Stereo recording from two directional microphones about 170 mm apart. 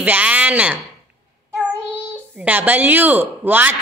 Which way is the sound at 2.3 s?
10° right (ahead or behind).